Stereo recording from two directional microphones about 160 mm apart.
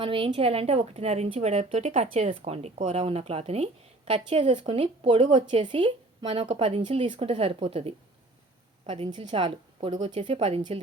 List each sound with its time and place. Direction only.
0.0 s speech: 35° right (ahead or behind)